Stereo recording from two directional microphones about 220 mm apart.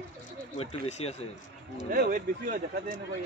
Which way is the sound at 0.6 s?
30° left (ahead or behind).